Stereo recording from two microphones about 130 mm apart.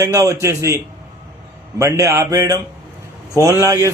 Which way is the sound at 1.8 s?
25° right (ahead or behind).